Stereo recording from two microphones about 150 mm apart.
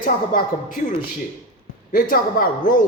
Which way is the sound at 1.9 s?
75° left (ahead or behind).